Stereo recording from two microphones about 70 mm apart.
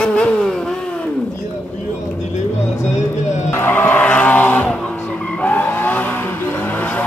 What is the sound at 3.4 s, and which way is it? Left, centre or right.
Vehicle, left.